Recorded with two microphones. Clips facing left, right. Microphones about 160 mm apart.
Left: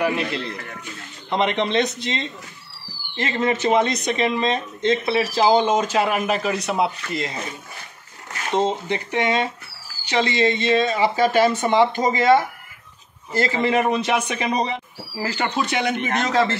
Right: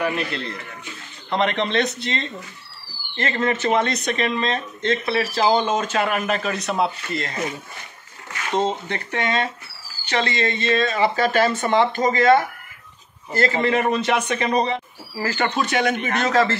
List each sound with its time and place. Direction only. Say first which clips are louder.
1.3 s speech: left 1 dB; 15° left (ahead or behind)
8.5 s speech: left 1 dB; 15° left (ahead or behind)